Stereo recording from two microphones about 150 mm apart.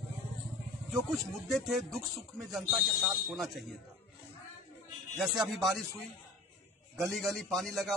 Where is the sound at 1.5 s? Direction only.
Centre (ahead or behind).